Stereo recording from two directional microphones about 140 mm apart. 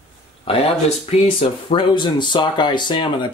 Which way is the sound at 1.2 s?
40° left (ahead or behind).